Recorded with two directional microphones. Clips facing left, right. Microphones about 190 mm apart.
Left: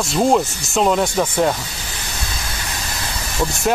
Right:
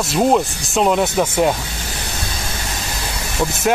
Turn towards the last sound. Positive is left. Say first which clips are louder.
# right 1 dB
turn(degrees=0)  # may be behind; listen again after turning